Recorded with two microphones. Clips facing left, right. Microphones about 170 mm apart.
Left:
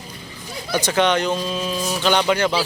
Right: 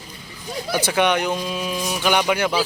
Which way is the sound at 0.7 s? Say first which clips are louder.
Left 1 dB; 10° right (ahead or behind).